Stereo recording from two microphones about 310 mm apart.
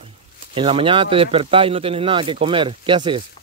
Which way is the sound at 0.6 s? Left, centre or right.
Centre.